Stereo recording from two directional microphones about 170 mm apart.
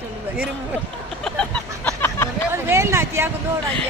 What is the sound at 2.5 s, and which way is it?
Speech, 15° right (ahead or behind).